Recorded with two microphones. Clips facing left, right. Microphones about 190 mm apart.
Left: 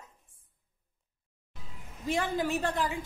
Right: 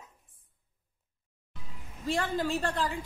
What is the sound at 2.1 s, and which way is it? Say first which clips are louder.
Speech: even; 15° left (ahead or behind).